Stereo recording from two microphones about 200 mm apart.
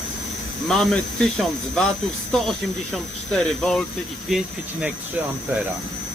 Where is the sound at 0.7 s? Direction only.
Centre (ahead or behind).